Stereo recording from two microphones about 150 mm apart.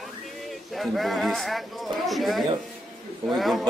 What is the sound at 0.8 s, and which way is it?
Speech, centre (ahead or behind).